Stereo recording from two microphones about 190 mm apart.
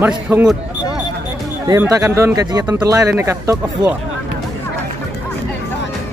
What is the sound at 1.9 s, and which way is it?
Speech, 15° right (ahead or behind).